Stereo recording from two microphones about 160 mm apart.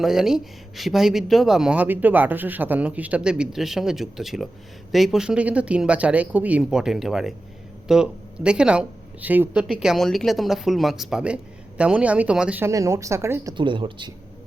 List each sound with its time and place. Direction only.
0.0 s speech: centre (ahead or behind)
13.6 s speech: 30° right (ahead or behind)